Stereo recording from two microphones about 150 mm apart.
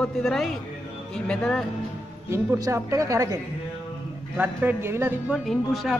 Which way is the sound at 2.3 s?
20° right (ahead or behind).